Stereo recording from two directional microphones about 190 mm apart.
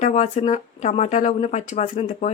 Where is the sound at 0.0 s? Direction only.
35° left (ahead or behind).